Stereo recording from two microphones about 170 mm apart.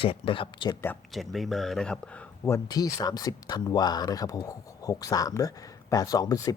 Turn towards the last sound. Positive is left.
turn(degrees=20)  # may be behind; listen again after turning